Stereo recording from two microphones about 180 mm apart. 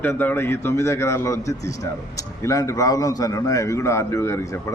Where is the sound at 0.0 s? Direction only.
10° left (ahead or behind).